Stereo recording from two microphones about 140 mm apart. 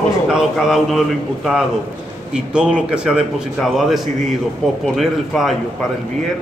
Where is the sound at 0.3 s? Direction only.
5° right (ahead or behind).